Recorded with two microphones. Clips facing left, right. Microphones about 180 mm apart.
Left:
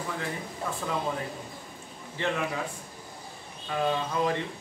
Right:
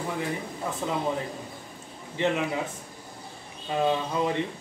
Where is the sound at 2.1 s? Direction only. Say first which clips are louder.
Right 4 dB; 20° right (ahead or behind).